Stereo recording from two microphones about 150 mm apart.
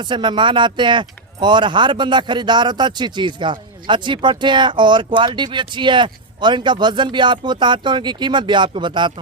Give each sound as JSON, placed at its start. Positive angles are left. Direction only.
{"t": 0.0, "sound": "speech", "side_deg": -30}